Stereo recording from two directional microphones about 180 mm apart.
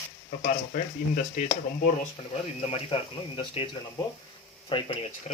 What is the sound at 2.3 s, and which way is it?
Speech, 35° left (ahead or behind).